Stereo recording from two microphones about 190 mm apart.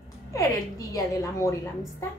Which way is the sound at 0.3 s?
15° left (ahead or behind).